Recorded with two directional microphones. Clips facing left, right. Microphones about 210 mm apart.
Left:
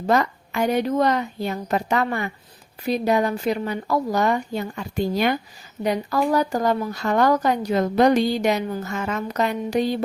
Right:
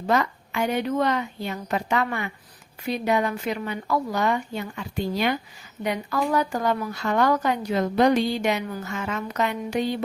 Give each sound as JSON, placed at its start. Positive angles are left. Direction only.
{"t": 0.1, "sound": "a woman's voice", "side_deg": 40}
{"t": 5.8, "sound": "a woman's voice", "side_deg": 35}